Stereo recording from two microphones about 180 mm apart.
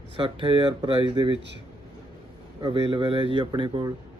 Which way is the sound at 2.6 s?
30° right (ahead or behind).